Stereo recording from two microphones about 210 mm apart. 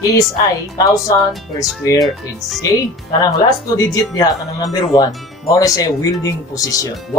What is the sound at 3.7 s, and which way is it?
Speech, 15° left (ahead or behind).